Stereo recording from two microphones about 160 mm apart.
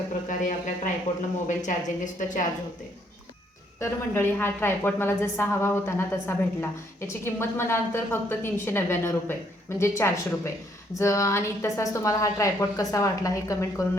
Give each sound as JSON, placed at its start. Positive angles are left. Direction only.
{"t": 0.3, "sound": "a woman's voice", "side_deg": 55}
{"t": 3.8, "sound": "a woman's voice", "side_deg": 15}